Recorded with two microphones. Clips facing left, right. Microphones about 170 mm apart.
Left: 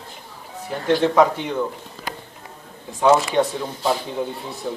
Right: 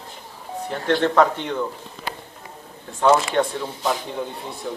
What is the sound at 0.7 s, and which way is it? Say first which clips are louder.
Speech: left 2 dB; 10° left (ahead or behind).